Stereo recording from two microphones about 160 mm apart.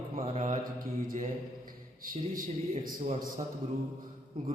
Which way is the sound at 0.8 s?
60° right (ahead or behind).